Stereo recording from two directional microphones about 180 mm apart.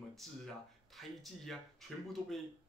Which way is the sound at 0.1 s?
Centre (ahead or behind).